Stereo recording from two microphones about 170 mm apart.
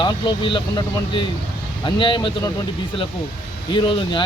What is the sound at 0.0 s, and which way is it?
Speech, 30° left (ahead or behind).